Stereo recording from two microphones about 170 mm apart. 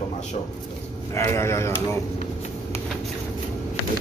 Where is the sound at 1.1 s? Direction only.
15° left (ahead or behind).